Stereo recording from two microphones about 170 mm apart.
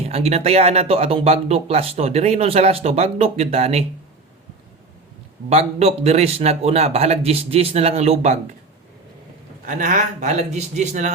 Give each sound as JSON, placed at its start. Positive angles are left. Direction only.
{"t": 0.1, "sound": "speech", "side_deg": -35}
{"t": 5.5, "sound": "speech", "side_deg": -40}
{"t": 9.6, "sound": "a man's voice", "side_deg": -50}